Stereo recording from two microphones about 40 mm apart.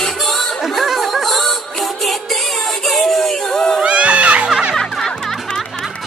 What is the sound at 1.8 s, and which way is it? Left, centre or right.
Music, centre.